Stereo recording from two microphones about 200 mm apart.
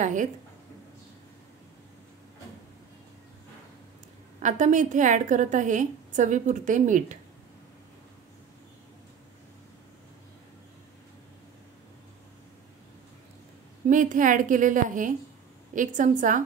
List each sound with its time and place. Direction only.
0.0 s a woman's voice: 40° right (ahead or behind)
4.4 s a woman's voice: 40° right (ahead or behind)
13.8 s a woman's voice: 40° right (ahead or behind)